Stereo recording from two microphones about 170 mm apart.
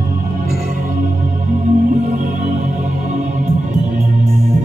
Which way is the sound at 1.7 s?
45° right (ahead or behind).